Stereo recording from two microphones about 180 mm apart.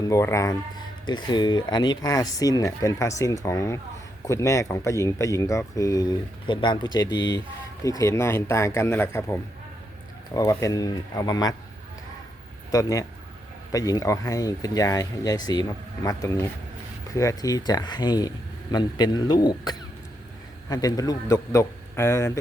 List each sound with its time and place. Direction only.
0.0 s speech: 15° left (ahead or behind)
12.7 s speech: 20° left (ahead or behind)